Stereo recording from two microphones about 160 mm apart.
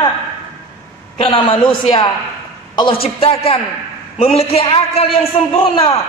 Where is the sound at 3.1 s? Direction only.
35° left (ahead or behind).